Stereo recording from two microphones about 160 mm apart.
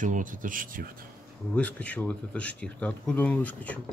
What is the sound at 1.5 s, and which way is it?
Speech, 10° left (ahead or behind).